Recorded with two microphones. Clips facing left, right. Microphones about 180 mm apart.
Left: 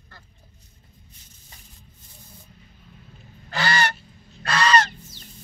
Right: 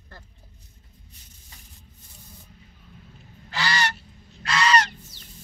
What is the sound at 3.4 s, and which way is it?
Goose, 50° left (ahead or behind).